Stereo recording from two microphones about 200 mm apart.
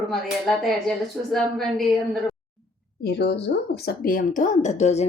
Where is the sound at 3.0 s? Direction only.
55° left (ahead or behind).